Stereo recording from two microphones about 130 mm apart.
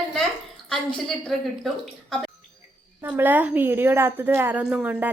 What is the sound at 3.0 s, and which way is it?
A woman's voice, 15° right (ahead or behind).